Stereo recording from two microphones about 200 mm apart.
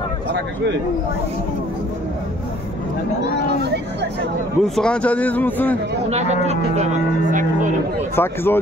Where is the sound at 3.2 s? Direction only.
55° right (ahead or behind).